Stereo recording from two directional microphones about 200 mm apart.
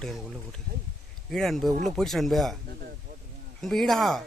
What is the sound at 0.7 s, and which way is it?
Speech, 45° right (ahead or behind).